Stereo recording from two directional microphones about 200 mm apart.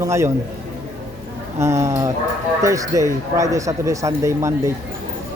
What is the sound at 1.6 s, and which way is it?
Speech, 15° right (ahead or behind).